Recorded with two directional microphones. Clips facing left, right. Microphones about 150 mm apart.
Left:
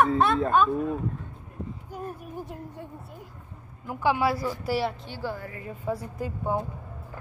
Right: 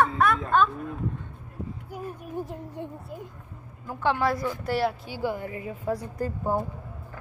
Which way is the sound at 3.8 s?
10° left (ahead or behind).